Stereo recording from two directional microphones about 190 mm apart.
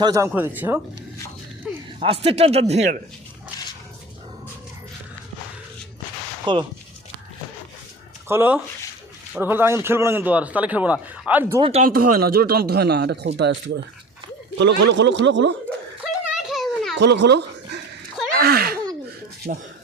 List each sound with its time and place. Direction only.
0.0 s a man's voice: 15° right (ahead or behind)
2.0 s speech: 30° right (ahead or behind)
6.4 s speech: 25° right (ahead or behind)
8.3 s a man's voice: 10° right (ahead or behind)
11.6 s speech: 30° right (ahead or behind)
11.9 s a man's voice: 50° right (ahead or behind); by 15.5 s 70° right (ahead or behind)
16.2 s children playing: centre (ahead or behind)
17.0 s a sound: 65° right (ahead or behind)
18.3 s a sound: 55° right (ahead or behind)